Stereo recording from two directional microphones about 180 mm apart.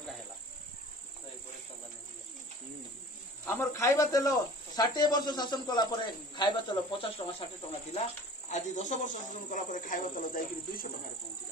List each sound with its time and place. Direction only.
3.4 s speech: 15° left (ahead or behind)
8.5 s speech: 40° left (ahead or behind)